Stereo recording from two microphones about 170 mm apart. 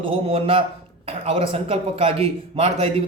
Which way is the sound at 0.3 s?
35° right (ahead or behind).